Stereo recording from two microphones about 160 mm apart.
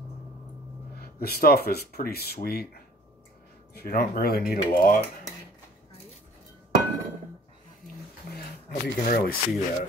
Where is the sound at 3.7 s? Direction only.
70° left (ahead or behind).